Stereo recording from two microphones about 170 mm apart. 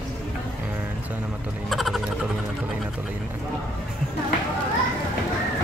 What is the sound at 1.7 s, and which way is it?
Speech, centre (ahead or behind).